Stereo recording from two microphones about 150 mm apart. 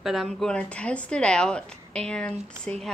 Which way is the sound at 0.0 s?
Centre (ahead or behind).